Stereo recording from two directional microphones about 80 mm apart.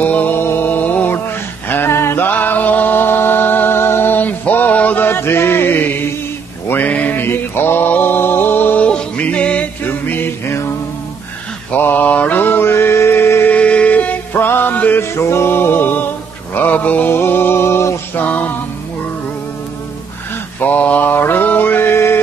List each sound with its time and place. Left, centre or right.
0.0 s a sound: left
6.7 s mantra: centre
9.8 s music: left
11.7 s mantra: left
13.5 s music: centre
16.5 s male singing: left
18.2 s music: centre
20.6 s mantra: centre